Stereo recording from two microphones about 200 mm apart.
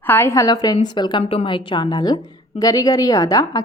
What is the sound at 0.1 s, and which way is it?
A woman's voice, 10° left (ahead or behind).